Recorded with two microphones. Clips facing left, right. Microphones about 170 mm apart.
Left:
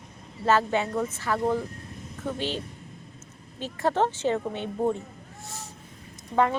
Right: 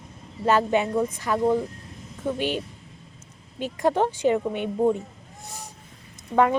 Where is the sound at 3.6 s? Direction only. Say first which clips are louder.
Right 3 dB; 15° right (ahead or behind).